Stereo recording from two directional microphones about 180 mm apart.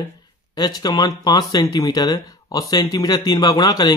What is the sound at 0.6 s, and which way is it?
Speech, 20° left (ahead or behind).